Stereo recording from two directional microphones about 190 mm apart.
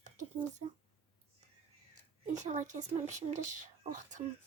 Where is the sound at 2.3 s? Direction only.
40° right (ahead or behind).